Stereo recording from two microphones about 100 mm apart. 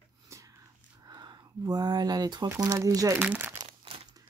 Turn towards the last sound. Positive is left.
turn(degrees=-80)